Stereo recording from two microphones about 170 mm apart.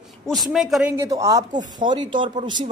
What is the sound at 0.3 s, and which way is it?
Speech, centre (ahead or behind).